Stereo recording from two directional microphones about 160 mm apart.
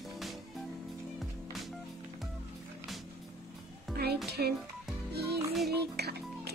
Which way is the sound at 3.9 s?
90° right.